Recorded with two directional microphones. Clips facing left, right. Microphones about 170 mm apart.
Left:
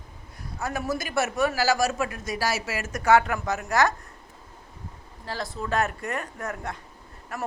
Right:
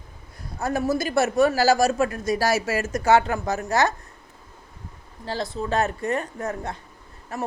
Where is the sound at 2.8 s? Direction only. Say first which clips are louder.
Left 1 dB; 30° right (ahead or behind).